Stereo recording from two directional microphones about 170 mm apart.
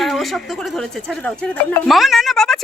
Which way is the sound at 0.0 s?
Centre (ahead or behind).